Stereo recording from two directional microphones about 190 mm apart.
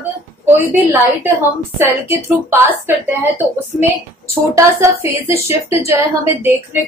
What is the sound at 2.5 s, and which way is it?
Speech, 10° right (ahead or behind).